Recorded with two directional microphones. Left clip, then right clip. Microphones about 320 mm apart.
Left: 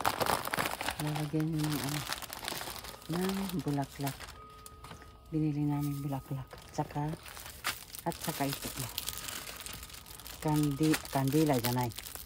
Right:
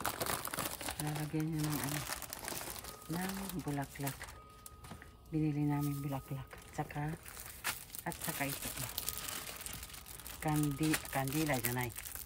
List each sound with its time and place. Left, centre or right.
0.0 s a sound: centre
0.9 s speech: centre
5.4 s speech: centre
7.6 s crumpling: centre
10.4 s speech: centre